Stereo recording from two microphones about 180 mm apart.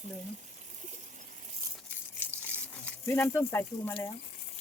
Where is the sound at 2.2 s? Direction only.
10° left (ahead or behind).